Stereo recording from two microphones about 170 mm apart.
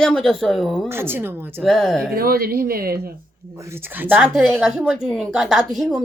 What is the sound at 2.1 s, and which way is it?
Speech, 60° right (ahead or behind).